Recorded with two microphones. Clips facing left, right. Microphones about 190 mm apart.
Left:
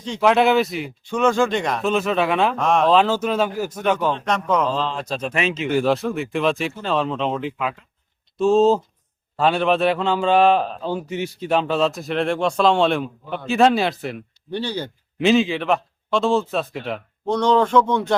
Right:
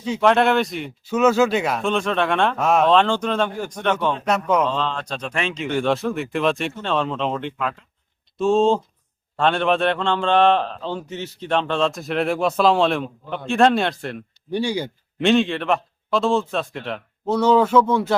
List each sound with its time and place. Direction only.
0.2 s a man's voice: centre (ahead or behind)
4.3 s speech: 10° right (ahead or behind)
4.6 s a man's voice: 5° left (ahead or behind)
14.5 s speech: 10° right (ahead or behind)
15.2 s a man's voice: centre (ahead or behind)